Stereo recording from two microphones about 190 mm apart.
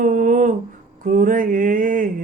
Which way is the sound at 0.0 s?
45° right (ahead or behind).